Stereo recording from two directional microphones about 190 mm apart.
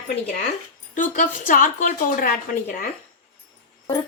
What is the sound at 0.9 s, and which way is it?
A woman's voice, 45° left (ahead or behind).